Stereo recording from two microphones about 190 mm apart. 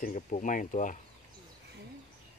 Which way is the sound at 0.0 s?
40° left (ahead or behind).